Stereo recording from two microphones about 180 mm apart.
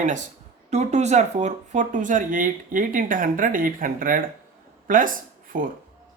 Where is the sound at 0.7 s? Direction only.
40° right (ahead or behind).